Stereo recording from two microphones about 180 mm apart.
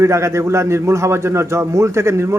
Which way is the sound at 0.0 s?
15° right (ahead or behind).